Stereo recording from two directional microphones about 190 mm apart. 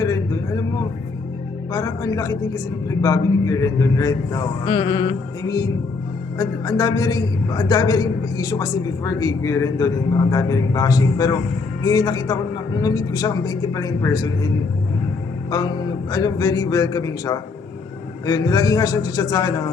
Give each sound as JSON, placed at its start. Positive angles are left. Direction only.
{"t": 0.0, "sound": "vehicle", "side_deg": 20}
{"t": 1.7, "sound": "a man's voice", "side_deg": 20}